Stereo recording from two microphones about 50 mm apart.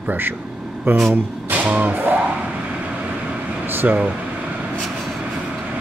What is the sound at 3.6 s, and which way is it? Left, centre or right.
Air conditioning, right.